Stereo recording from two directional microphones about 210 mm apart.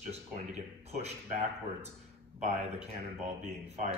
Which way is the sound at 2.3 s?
30° right (ahead or behind).